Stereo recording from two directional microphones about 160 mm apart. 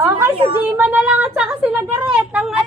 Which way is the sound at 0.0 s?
15° right (ahead or behind).